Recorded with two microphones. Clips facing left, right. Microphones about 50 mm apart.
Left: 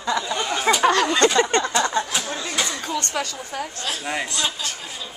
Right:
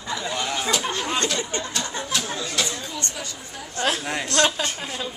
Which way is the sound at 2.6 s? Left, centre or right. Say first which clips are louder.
Left 4 dB; left.